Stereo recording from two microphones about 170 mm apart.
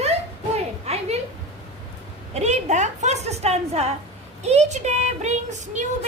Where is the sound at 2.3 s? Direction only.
40° right (ahead or behind).